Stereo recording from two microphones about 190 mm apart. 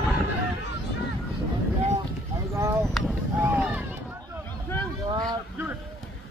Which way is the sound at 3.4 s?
10° right (ahead or behind).